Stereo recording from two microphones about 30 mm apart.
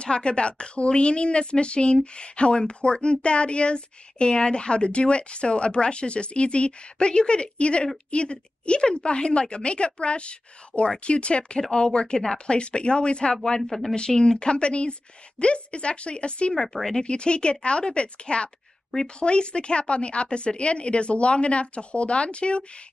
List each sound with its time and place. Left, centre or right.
0.0 s speech: left
13.3 s speech: left
16.6 s speech: centre
17.0 s speech: left